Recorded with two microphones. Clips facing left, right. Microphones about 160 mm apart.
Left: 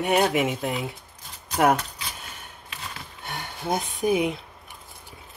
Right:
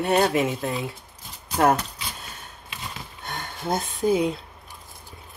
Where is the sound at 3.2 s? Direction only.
10° left (ahead or behind).